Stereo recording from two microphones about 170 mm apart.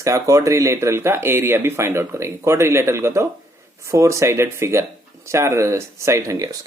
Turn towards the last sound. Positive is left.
turn(degrees=-20)  # may be behind; listen again after turning